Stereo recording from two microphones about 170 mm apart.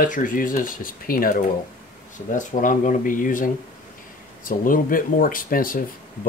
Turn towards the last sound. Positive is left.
turn(degrees=55)  # may be behind; listen again after turning